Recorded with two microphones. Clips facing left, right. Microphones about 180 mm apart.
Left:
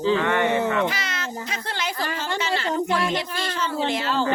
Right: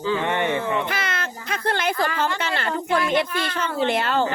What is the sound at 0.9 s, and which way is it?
Speech, 55° right (ahead or behind).